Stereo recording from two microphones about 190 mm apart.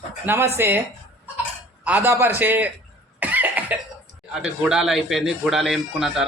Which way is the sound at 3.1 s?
10° right (ahead or behind).